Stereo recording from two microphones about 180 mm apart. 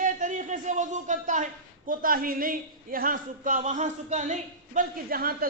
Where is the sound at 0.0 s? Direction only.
45° right (ahead or behind).